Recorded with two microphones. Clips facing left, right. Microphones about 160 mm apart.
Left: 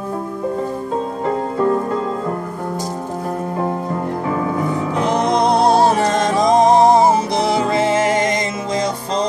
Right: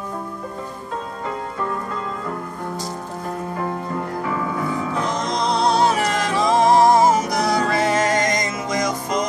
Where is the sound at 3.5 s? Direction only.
25° left (ahead or behind).